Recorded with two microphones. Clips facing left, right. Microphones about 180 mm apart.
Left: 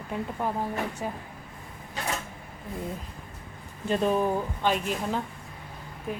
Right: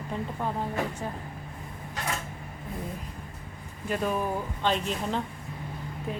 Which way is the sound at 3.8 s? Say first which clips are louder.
Left 4 dB; 25° left (ahead or behind).